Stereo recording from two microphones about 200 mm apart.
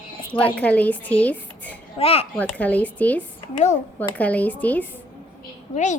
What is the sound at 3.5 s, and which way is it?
Speech, 35° left (ahead or behind).